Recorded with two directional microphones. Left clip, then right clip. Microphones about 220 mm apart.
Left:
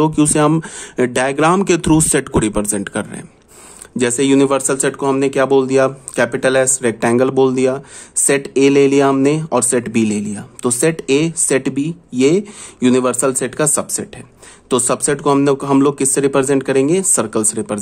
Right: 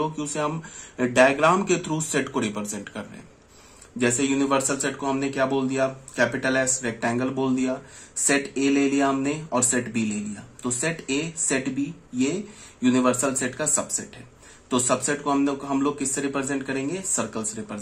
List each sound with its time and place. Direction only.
0.0 s speech: 50° left (ahead or behind)
12.8 s speech: 50° left (ahead or behind)